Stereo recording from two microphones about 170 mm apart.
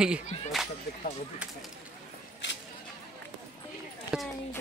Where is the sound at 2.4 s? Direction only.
90° left.